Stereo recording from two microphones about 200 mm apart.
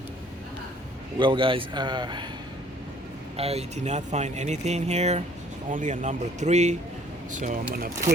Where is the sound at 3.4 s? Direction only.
30° right (ahead or behind).